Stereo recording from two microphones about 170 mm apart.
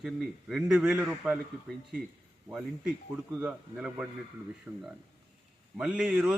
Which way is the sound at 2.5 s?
5° right (ahead or behind).